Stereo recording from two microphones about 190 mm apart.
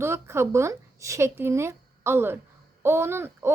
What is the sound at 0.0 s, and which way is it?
A woman's voice, 15° right (ahead or behind).